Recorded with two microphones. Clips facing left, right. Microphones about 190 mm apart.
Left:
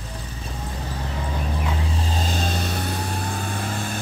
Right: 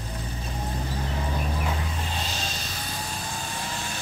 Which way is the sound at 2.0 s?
40° left (ahead or behind).